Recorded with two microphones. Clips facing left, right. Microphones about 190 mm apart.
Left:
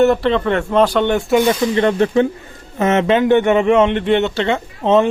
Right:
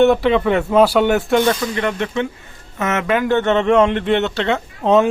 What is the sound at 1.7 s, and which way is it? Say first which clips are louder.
Speech: left 7 dB; 30° left (ahead or behind).